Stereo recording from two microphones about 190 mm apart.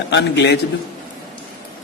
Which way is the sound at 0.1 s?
65° left (ahead or behind).